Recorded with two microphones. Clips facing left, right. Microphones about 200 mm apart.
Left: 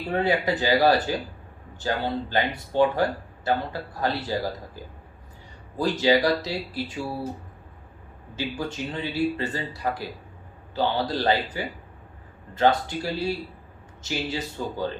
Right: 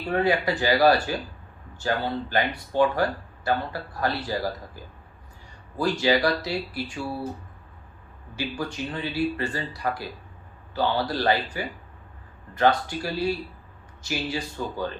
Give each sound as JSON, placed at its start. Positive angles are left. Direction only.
{"t": 0.1, "sound": "speech", "side_deg": 20}
{"t": 8.4, "sound": "speech", "side_deg": 20}